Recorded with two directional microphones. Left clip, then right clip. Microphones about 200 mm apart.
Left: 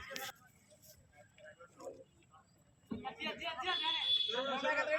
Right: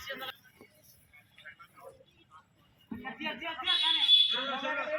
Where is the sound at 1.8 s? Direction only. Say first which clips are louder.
Left 3 dB; 30° left (ahead or behind).